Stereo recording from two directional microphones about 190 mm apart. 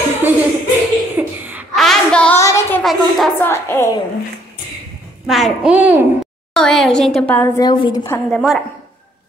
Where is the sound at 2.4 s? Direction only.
15° left (ahead or behind).